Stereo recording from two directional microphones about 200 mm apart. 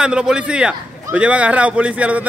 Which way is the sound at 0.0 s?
5° right (ahead or behind).